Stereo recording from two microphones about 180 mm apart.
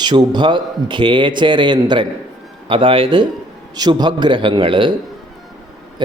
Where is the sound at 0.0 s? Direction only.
25° right (ahead or behind).